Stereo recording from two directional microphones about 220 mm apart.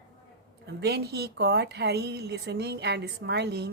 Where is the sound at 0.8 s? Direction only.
45° right (ahead or behind).